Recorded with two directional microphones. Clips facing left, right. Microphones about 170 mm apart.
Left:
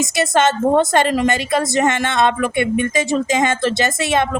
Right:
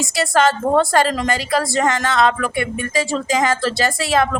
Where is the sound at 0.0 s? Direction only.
20° left (ahead or behind).